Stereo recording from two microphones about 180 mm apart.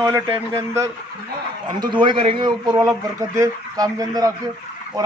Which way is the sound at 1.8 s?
25° right (ahead or behind).